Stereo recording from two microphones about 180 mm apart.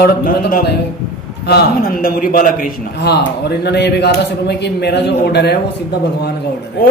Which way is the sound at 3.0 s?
65° left (ahead or behind).